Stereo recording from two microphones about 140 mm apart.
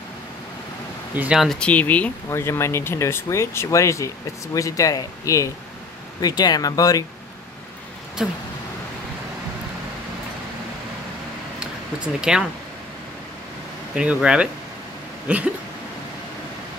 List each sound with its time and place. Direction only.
1.1 s speech: 10° right (ahead or behind); by 7.1 s 25° left (ahead or behind)
8.2 s speech: 5° right (ahead or behind)
11.6 s a sound: 5° right (ahead or behind)
13.9 s speech: 5° right (ahead or behind)